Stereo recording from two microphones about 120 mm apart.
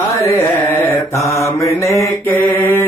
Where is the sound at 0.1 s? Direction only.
25° left (ahead or behind).